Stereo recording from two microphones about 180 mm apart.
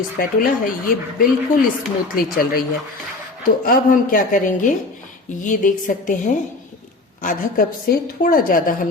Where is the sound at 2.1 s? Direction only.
55° left (ahead or behind).